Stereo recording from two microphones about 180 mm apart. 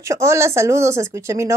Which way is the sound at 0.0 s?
15° right (ahead or behind).